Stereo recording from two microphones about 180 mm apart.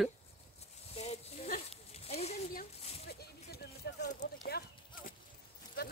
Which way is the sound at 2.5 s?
55° left (ahead or behind).